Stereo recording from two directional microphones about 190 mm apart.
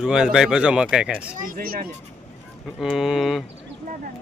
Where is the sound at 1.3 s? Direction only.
45° right (ahead or behind).